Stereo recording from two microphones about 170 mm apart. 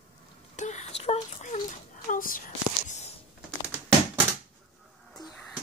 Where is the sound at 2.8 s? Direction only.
40° left (ahead or behind).